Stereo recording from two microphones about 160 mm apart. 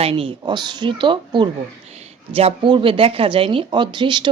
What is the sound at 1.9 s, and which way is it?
Speech, 40° right (ahead or behind).